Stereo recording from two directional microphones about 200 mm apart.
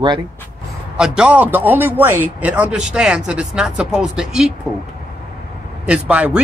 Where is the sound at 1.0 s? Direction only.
5° right (ahead or behind).